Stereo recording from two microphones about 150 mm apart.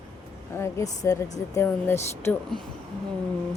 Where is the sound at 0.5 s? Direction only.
20° left (ahead or behind).